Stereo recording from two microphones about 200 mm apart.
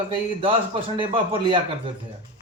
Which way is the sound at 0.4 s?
25° right (ahead or behind).